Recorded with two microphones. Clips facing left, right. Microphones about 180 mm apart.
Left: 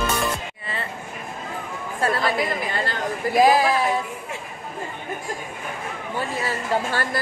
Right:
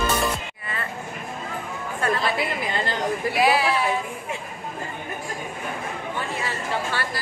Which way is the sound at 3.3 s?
40° left (ahead or behind).